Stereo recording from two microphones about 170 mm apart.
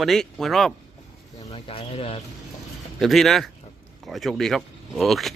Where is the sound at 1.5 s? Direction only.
35° left (ahead or behind).